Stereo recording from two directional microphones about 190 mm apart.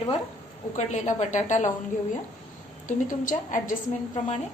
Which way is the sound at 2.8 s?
45° left (ahead or behind).